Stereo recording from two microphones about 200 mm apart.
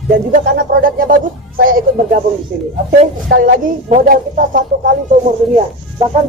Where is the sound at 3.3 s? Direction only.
45° right (ahead or behind).